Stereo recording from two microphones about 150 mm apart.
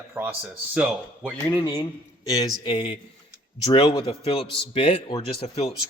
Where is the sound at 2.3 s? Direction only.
25° left (ahead or behind).